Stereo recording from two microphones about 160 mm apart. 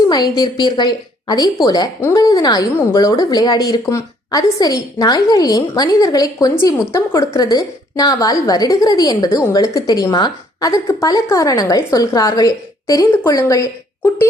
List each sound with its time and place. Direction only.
0.1 s a woman's voice: 25° left (ahead or behind)